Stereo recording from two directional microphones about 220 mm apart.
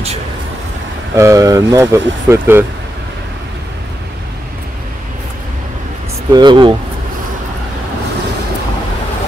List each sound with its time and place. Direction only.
1.1 s speech: 15° right (ahead or behind)
6.3 s speech: 20° right (ahead or behind)